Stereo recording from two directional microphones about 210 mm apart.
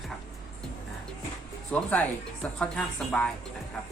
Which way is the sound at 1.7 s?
5° left (ahead or behind).